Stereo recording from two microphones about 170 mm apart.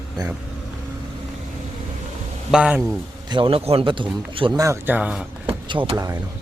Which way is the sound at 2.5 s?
5° right (ahead or behind).